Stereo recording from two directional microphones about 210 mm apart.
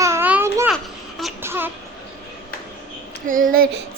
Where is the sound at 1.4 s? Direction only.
10° right (ahead or behind).